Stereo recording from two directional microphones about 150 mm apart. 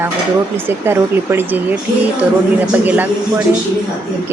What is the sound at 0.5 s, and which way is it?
Speech, 15° right (ahead or behind).